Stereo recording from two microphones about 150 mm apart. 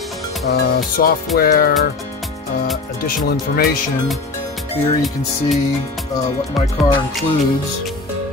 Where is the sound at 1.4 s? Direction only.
75° left (ahead or behind).